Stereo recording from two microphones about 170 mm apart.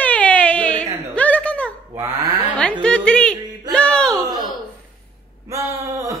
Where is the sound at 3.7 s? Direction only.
5° left (ahead or behind).